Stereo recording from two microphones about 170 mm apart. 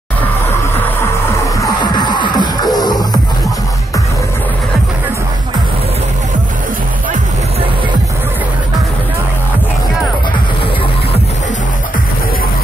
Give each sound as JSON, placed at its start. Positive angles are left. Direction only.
{"t": 1.6, "sound": "music", "side_deg": 25}